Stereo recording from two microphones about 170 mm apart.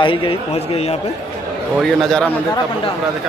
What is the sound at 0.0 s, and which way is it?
Speech, 30° left (ahead or behind).